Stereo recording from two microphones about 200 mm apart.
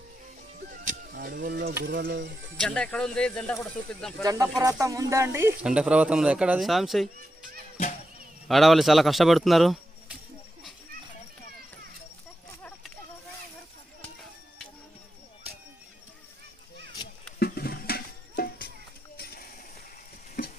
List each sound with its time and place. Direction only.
0.7 s music: 45° right (ahead or behind)
1.8 s speech: 50° right (ahead or behind)
2.6 s speech: 5° left (ahead or behind)
4.2 s speech: 20° right (ahead or behind); by 7.1 s centre (ahead or behind)
8.4 s speech: centre (ahead or behind)
17.0 s a sound: 20° left (ahead or behind)
17.4 s music: 50° left (ahead or behind)
19.1 s a sound: 50° left (ahead or behind)